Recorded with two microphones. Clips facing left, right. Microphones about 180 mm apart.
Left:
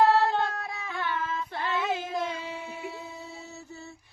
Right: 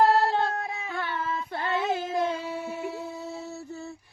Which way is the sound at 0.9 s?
35° right (ahead or behind).